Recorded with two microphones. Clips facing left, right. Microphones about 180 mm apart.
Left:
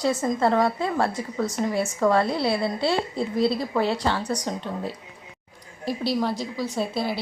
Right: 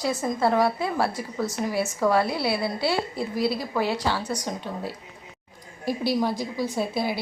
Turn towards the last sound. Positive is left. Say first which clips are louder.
# even
turn(degrees=-10)  # may be behind; listen again after turning